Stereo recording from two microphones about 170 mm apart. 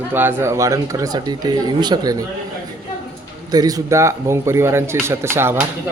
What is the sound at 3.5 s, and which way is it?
Speech, 25° right (ahead or behind).